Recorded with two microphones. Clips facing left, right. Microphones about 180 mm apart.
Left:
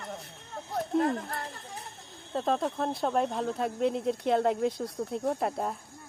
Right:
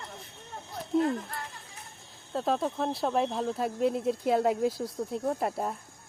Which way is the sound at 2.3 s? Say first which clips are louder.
Even; 5° right (ahead or behind).